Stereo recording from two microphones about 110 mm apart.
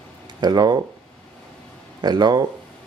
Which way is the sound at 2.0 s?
40° right (ahead or behind).